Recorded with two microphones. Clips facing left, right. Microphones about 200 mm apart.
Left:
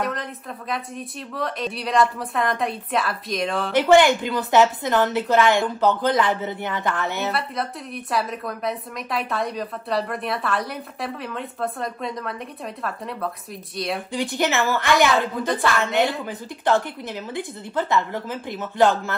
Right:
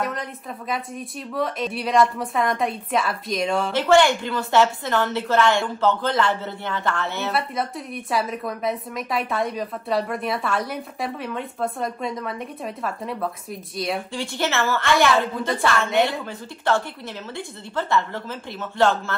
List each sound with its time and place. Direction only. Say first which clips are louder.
0.0 s a woman's voice: left 1 dB; centre (ahead or behind)
3.7 s a woman's voice: left 3 dB; 15° left (ahead or behind)
7.3 s a woman's voice: right 2 dB; centre (ahead or behind)
14.1 s a woman's voice: left 6 dB; 15° left (ahead or behind)
15.1 s a woman's voice: even; centre (ahead or behind)
16.3 s a woman's voice: left 2 dB; 15° left (ahead or behind)